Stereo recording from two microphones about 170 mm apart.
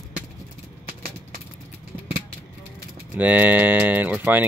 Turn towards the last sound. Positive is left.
turn(degrees=-10)  # may be behind; listen again after turning